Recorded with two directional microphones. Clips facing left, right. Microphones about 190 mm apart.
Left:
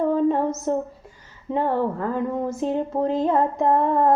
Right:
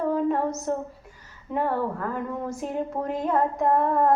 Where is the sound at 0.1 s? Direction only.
30° left (ahead or behind).